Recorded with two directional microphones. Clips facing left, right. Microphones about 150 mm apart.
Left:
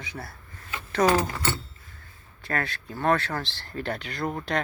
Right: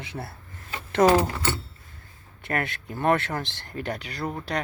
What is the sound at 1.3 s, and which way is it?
Speech, 10° right (ahead or behind).